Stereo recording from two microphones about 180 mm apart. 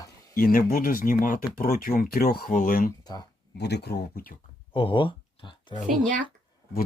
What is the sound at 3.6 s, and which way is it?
Speech, 65° left (ahead or behind).